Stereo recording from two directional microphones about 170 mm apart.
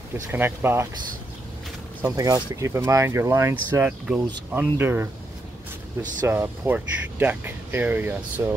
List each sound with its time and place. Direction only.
0.3 s speech: 10° right (ahead or behind)
2.0 s speech: 20° right (ahead or behind)
6.2 s speech: 15° right (ahead or behind)